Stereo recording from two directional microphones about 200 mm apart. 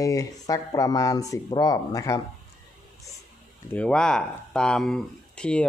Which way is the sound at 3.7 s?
5° left (ahead or behind).